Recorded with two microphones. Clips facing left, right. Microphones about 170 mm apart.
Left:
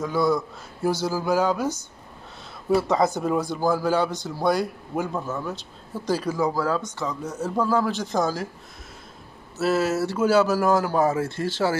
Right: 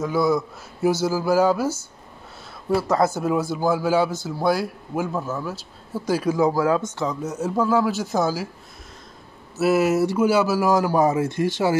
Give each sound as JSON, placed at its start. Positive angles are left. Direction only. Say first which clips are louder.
{"t": 0.0, "sound": "a man's voice", "louder": "right 2 dB", "side_deg": -10}
{"t": 6.8, "sound": "speech", "louder": "right 4 dB", "side_deg": -20}
{"t": 7.2, "sound": "a man's voice", "louder": "right 1 dB", "side_deg": -10}
{"t": 9.6, "sound": "a man's voice", "louder": "right 4 dB", "side_deg": -10}